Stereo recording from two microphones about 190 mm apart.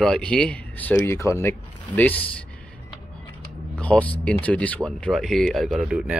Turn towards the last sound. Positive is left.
turn(degrees=-5)  # may be behind; listen again after turning